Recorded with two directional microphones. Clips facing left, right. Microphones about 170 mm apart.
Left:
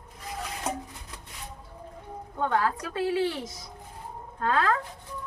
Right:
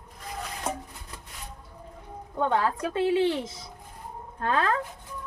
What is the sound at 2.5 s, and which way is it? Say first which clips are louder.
Speech: right 1 dB; 25° right (ahead or behind).